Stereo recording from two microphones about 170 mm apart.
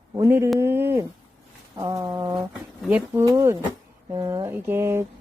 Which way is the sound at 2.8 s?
10° right (ahead or behind).